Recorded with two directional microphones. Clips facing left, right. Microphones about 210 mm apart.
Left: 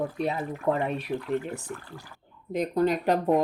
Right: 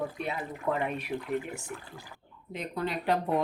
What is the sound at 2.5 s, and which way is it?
Speech, 45° left (ahead or behind).